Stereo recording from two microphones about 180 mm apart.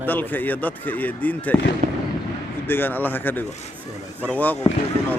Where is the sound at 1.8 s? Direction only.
40° right (ahead or behind).